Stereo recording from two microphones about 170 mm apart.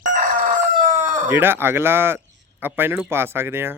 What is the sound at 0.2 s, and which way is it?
Chicken, 50° right (ahead or behind).